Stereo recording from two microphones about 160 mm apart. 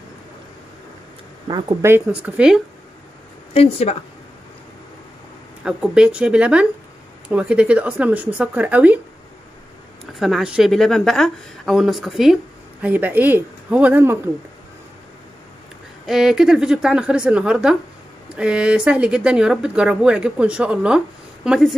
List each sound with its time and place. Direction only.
1.8 s speech: 15° right (ahead or behind)
3.5 s a woman's voice: 40° left (ahead or behind)
5.6 s speech: 5° right (ahead or behind)
10.1 s a woman's voice: centre (ahead or behind)
16.1 s a woman's voice: 5° right (ahead or behind)